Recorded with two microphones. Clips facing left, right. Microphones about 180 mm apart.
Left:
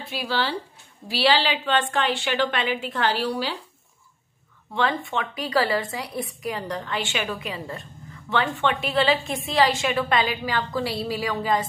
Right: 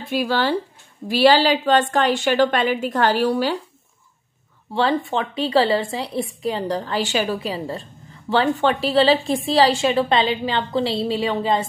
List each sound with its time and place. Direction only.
0.0 s a woman's voice: 50° right (ahead or behind)
4.7 s a woman's voice: 30° right (ahead or behind)